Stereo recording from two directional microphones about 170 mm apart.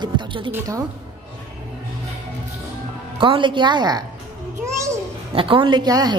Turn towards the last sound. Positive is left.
turn(degrees=-25)  # may be behind; listen again after turning